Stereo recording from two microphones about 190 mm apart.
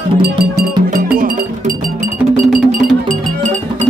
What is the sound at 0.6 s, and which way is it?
Music, 50° right (ahead or behind).